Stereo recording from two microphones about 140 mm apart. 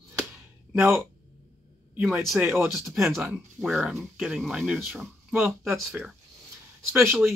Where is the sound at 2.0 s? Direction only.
15° right (ahead or behind).